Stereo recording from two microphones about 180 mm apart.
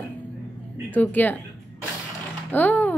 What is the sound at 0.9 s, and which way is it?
Speech, 10° left (ahead or behind).